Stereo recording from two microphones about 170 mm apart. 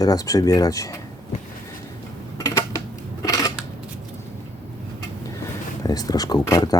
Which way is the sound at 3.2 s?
20° left (ahead or behind).